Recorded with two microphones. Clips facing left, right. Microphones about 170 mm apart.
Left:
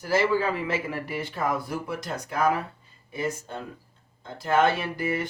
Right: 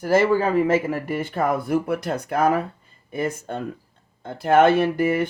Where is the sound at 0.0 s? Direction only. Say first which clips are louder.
Right 5 dB; 50° right (ahead or behind).